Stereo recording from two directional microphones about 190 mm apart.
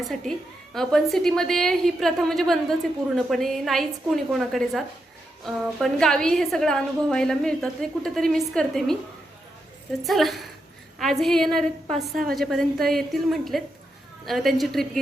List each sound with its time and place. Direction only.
0.0 s a woman's voice: centre (ahead or behind)
10.0 s a woman's voice: centre (ahead or behind)